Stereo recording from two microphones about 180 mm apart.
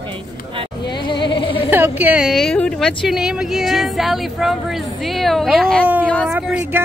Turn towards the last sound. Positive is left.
turn(degrees=-10)  # may be behind; listen again after turning